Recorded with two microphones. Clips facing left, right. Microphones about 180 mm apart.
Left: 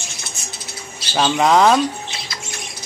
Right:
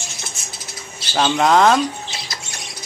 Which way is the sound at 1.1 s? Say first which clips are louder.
Even; centre (ahead or behind).